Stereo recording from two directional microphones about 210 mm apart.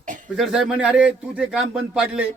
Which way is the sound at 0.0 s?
40° right (ahead or behind).